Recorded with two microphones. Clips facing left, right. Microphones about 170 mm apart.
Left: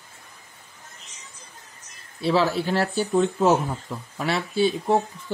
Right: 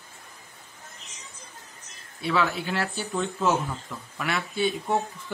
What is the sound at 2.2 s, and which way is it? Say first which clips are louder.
Speech: left 5 dB; 30° left (ahead or behind).